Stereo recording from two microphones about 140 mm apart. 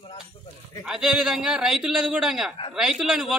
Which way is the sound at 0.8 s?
5° right (ahead or behind).